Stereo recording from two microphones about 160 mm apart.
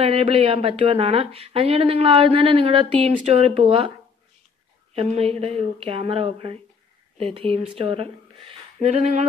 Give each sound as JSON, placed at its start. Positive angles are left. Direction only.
{"t": 0.0, "sound": "speech", "side_deg": -35}
{"t": 4.9, "sound": "speech", "side_deg": -40}